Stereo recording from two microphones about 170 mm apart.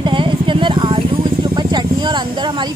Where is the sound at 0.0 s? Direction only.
30° right (ahead or behind).